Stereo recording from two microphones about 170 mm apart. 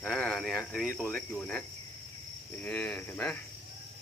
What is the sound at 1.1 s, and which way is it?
Cricket, 5° left (ahead or behind).